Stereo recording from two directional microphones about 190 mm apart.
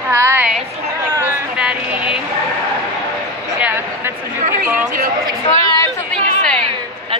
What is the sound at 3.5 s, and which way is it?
Speech, 10° right (ahead or behind).